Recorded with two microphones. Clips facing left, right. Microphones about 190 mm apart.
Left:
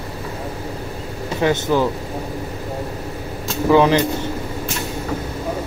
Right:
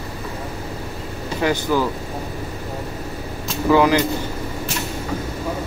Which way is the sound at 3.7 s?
25° left (ahead or behind).